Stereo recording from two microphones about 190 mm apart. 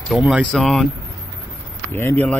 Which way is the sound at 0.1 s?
5° right (ahead or behind).